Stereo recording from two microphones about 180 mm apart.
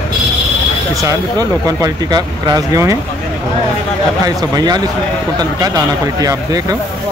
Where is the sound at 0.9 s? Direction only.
20° right (ahead or behind).